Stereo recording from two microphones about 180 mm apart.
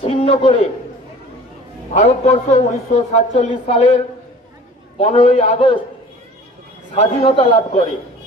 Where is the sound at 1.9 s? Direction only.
40° left (ahead or behind).